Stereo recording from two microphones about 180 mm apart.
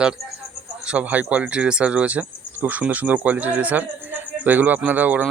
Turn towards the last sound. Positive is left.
turn(degrees=-10)  # may be behind; listen again after turning